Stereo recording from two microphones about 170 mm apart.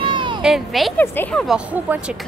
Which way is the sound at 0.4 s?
Centre (ahead or behind).